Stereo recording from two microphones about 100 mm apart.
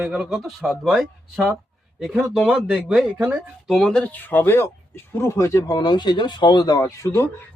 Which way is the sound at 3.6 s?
5° left (ahead or behind).